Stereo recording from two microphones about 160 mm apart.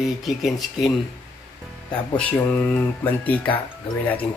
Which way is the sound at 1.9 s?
10° left (ahead or behind).